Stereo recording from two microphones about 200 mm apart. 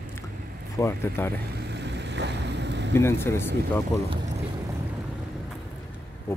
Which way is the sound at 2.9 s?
10° left (ahead or behind).